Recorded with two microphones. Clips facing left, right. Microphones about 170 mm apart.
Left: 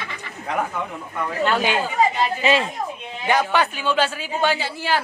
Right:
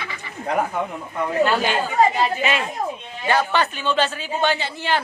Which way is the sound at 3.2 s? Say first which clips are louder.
Even; 15° left (ahead or behind).